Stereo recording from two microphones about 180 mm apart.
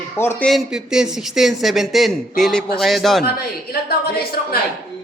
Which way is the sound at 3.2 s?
60° left (ahead or behind).